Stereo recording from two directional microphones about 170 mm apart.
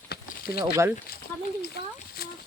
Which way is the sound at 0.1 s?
65° left (ahead or behind).